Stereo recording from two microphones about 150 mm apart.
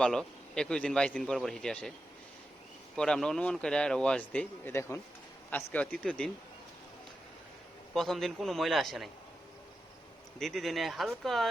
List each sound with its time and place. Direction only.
0.0 s a man's voice: 5° left (ahead or behind)
2.9 s a man's voice: 5° left (ahead or behind)
7.9 s a man's voice: centre (ahead or behind)
10.3 s a man's voice: centre (ahead or behind)